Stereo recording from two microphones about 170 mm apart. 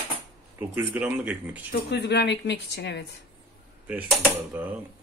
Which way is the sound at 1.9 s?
85° left.